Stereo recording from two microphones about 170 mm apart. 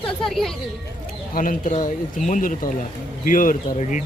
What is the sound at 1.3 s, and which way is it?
A man's voice, 50° left (ahead or behind).